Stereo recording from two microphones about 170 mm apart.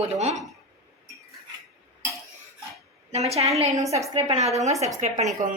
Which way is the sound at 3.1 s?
40° right (ahead or behind).